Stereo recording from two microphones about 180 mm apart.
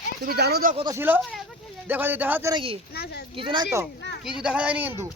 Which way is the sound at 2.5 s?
30° right (ahead or behind).